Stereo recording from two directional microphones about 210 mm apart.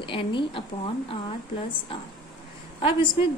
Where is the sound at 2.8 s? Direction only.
25° left (ahead or behind).